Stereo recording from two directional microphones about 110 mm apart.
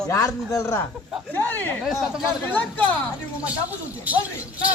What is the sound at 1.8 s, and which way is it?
Speech, centre (ahead or behind).